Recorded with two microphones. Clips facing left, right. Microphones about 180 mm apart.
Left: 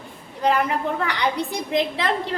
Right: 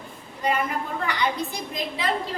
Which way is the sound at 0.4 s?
75° left (ahead or behind).